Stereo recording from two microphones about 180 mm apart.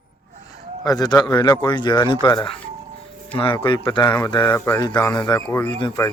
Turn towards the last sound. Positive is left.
turn(degrees=25)  # may be behind; listen again after turning